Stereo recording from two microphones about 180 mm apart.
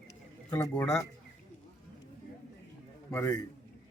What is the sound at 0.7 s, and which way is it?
Speech, 5° left (ahead or behind).